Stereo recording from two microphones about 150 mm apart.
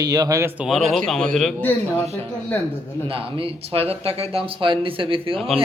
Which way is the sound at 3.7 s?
40° right (ahead or behind).